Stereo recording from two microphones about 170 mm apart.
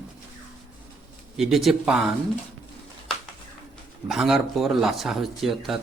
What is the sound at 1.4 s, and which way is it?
Speech, centre (ahead or behind).